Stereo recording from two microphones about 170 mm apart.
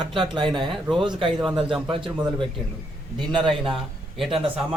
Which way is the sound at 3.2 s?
30° right (ahead or behind).